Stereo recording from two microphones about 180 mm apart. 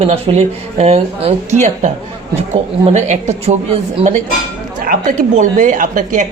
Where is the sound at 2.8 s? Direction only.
40° right (ahead or behind).